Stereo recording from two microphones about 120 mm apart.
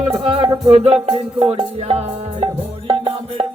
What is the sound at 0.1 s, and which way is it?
Music, 50° right (ahead or behind).